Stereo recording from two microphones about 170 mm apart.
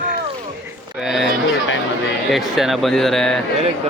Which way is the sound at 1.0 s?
Centre (ahead or behind).